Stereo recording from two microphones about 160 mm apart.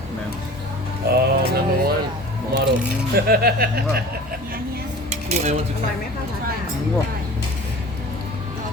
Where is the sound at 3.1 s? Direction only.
70° right (ahead or behind).